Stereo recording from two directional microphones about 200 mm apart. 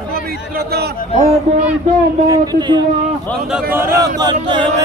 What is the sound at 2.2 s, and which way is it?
Speech, 20° right (ahead or behind).